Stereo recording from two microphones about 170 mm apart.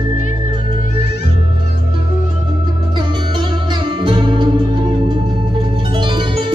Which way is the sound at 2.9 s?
25° right (ahead or behind).